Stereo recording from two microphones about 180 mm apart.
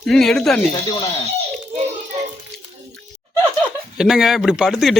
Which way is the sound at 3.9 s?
Centre (ahead or behind).